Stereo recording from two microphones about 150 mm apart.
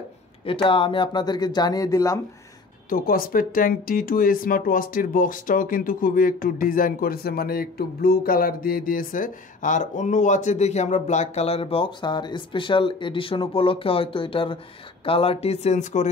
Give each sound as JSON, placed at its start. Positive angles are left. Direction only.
{"t": 0.5, "sound": "speech", "side_deg": 35}
{"t": 2.9, "sound": "speech", "side_deg": 75}